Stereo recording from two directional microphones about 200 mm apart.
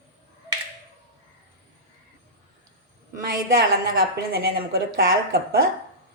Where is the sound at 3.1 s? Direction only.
45° right (ahead or behind).